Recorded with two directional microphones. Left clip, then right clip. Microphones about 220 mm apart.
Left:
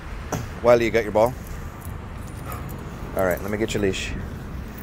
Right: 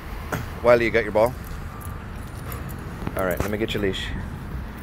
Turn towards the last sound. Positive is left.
turn(degrees=20)  # may be behind; listen again after turning